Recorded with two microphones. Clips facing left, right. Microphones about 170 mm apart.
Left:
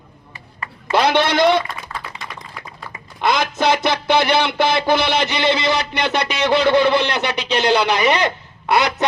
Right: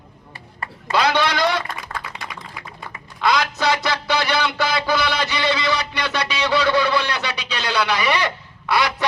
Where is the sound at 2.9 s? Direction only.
25° left (ahead or behind).